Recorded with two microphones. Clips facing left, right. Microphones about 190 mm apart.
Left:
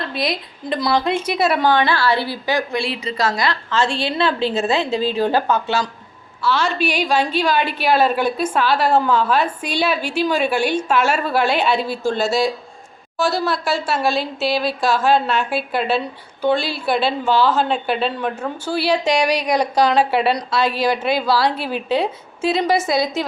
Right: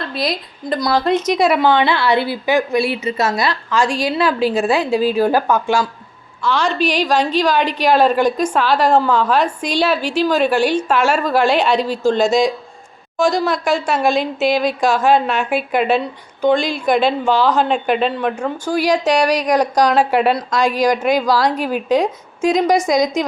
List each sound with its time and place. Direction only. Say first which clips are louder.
0.1 s a woman's voice: right 1 dB; centre (ahead or behind)
1.5 s a woman's voice: right 2 dB; 20° right (ahead or behind)
2.6 s a woman's voice: right 5 dB; 25° left (ahead or behind)
3.0 s a woman's voice: right 2 dB; 25° right (ahead or behind)
3.7 s a woman's voice: right 3 dB; 10° right (ahead or behind)
4.2 s a woman's voice: right 2 dB; 25° left (ahead or behind)
4.4 s a woman's voice: right 3 dB; 10° right (ahead or behind)
6.4 s a woman's voice: right 2 dB; 5° left (ahead or behind)
18.7 s a woman's voice: right 2 dB; 10° right (ahead or behind)
19.1 s a woman's voice: right 3 dB; 10° left (ahead or behind)
19.5 s a woman's voice: right 1 dB; 10° right (ahead or behind)